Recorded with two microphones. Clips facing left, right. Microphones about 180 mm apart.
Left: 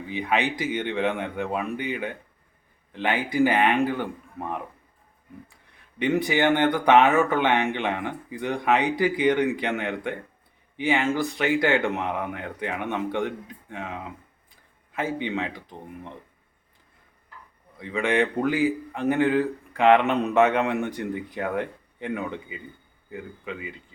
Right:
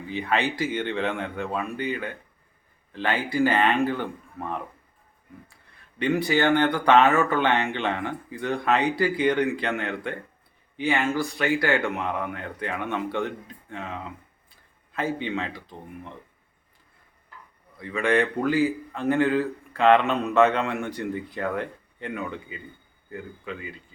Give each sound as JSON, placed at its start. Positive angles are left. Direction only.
{"t": 0.1, "sound": "a man's voice", "side_deg": 15}
{"t": 6.0, "sound": "a man's voice", "side_deg": 20}
{"t": 17.7, "sound": "a man's voice", "side_deg": 20}